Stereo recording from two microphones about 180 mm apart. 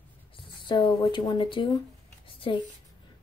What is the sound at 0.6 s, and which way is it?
A child's voice, 25° left (ahead or behind).